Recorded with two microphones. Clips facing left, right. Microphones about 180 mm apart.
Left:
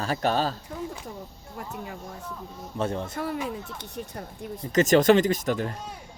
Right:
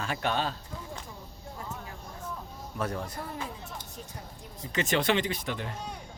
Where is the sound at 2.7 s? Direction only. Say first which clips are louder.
Left 5 dB; 25° left (ahead or behind).